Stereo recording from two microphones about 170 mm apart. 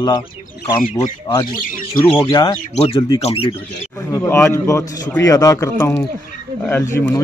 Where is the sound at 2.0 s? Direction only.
10° left (ahead or behind).